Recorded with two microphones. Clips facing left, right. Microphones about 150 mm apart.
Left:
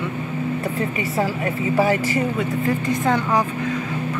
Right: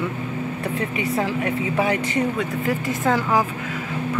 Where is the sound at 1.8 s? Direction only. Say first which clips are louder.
Left 3 dB; centre (ahead or behind).